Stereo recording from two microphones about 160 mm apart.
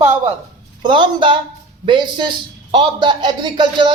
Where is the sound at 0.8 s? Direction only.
30° right (ahead or behind).